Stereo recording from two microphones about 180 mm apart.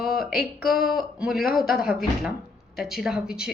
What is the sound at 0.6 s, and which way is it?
A woman's voice, centre (ahead or behind).